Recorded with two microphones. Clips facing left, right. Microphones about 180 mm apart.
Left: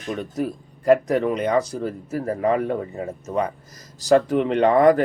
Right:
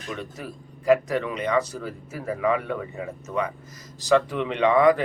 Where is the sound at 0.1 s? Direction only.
45° left (ahead or behind).